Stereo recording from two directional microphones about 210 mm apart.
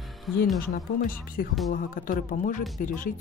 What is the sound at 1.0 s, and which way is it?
Speech, 45° left (ahead or behind).